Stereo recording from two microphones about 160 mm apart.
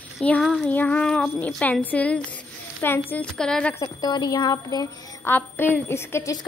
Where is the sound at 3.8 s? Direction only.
25° left (ahead or behind).